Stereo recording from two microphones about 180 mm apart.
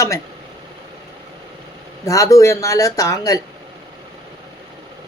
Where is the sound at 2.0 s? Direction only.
15° left (ahead or behind).